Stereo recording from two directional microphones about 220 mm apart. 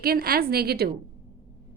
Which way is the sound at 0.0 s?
45° right (ahead or behind).